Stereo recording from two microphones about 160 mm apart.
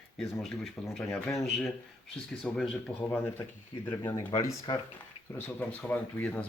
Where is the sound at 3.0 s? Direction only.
10° left (ahead or behind).